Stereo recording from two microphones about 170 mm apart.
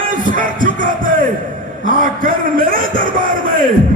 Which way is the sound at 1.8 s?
50° right (ahead or behind).